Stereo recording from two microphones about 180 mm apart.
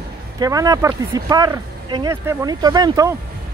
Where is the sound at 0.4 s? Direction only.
20° right (ahead or behind).